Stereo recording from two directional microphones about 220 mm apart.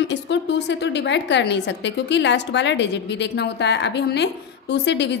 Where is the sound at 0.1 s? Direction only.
55° left (ahead or behind).